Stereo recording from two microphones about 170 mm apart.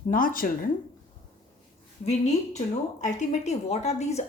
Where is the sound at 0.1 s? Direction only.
55° left (ahead or behind).